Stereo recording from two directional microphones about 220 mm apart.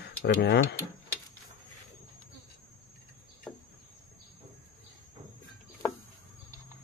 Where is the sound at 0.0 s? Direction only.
50° left (ahead or behind).